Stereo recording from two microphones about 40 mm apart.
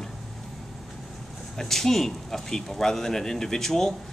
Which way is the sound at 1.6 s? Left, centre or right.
Centre.